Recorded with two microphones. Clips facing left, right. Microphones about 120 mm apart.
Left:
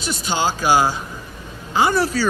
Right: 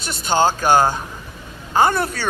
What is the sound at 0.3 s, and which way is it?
Speech, 50° right (ahead or behind).